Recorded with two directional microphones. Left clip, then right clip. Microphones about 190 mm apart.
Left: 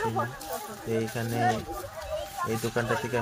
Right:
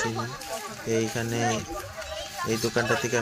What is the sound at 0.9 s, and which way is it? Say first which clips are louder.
Speech: right 3 dB; centre (ahead or behind).